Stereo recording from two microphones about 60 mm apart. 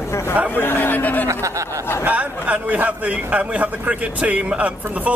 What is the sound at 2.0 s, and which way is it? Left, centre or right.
A man's voice, right.